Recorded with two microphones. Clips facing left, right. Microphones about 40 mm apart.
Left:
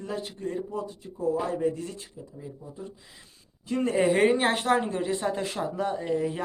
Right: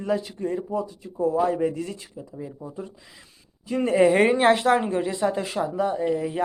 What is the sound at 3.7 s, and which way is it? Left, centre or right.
Speech, right.